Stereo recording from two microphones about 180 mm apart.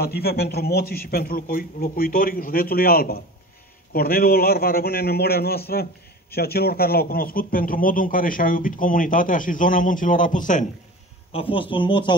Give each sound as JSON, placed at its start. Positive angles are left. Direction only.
{"t": 0.0, "sound": "a man's voice", "side_deg": 60}
{"t": 11.3, "sound": "speech", "side_deg": 30}